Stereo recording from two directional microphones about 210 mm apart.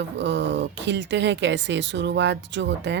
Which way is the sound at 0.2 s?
55° right (ahead or behind).